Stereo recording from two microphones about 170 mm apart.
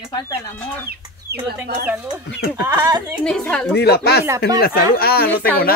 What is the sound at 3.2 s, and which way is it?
Speech, 5° left (ahead or behind).